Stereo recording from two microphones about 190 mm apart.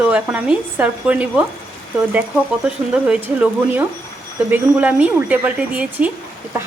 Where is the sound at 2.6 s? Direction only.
5° right (ahead or behind).